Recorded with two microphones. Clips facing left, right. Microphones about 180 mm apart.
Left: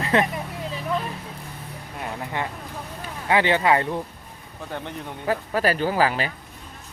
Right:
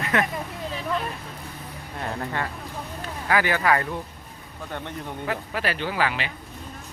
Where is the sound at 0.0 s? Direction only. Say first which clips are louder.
Left 3 dB; 30° left (ahead or behind).